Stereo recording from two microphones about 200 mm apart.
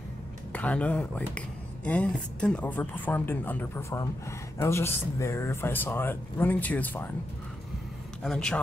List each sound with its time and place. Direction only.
0.5 s speech: 5° left (ahead or behind)
8.2 s a man's voice: centre (ahead or behind)